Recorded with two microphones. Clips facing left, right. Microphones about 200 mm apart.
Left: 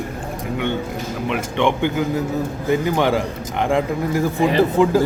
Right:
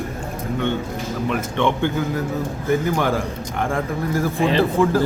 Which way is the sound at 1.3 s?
15° left (ahead or behind).